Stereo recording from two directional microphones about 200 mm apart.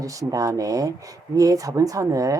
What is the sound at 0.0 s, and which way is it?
Speech, 15° right (ahead or behind).